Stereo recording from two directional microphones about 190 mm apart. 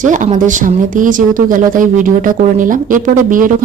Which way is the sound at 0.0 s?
40° right (ahead or behind).